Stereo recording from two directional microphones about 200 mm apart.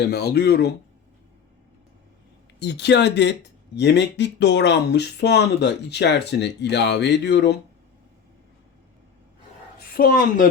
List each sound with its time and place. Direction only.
0.0 s speech: 55° left (ahead or behind)
2.6 s speech: 60° left (ahead or behind)
9.7 s a woman's voice: 50° left (ahead or behind)